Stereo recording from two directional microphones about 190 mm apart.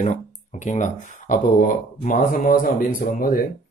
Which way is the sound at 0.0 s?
40° left (ahead or behind).